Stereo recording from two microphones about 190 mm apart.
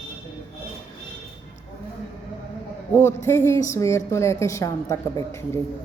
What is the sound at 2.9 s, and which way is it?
Speech, 10° left (ahead or behind).